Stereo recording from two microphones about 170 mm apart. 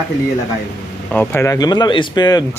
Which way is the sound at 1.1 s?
10° left (ahead or behind).